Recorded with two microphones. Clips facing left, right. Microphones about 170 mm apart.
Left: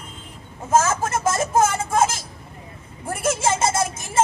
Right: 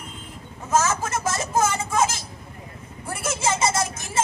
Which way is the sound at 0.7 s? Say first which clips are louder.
Left 3 dB; 50° left (ahead or behind).